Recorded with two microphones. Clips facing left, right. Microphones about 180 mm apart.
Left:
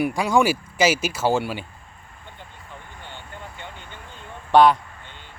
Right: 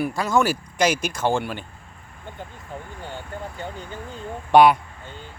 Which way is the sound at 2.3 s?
40° right (ahead or behind).